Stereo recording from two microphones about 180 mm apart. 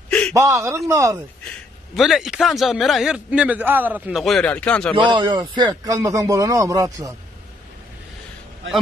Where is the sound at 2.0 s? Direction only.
Centre (ahead or behind).